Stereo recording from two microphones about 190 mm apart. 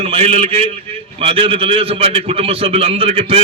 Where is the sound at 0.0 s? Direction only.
30° right (ahead or behind).